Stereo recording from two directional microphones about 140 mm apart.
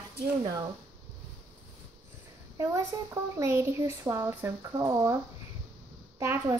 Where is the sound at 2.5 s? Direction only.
20° right (ahead or behind).